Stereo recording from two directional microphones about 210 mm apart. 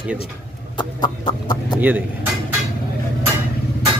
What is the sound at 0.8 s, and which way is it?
Chicken, 20° left (ahead or behind).